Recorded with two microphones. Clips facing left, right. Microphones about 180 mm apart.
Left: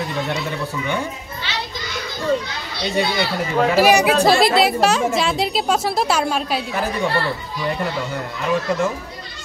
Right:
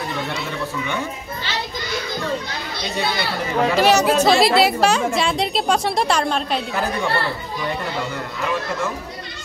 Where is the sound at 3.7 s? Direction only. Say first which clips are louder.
Left 1 dB; 10° left (ahead or behind).